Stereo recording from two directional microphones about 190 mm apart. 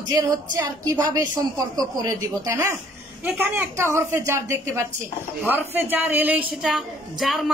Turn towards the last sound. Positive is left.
turn(degrees=0)  # may be behind; listen again after turning